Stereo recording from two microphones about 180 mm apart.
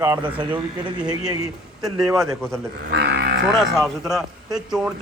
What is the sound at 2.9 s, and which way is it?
Cattle, 65° right (ahead or behind).